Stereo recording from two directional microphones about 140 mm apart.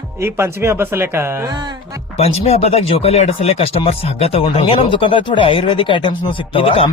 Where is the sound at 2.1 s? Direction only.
45° left (ahead or behind).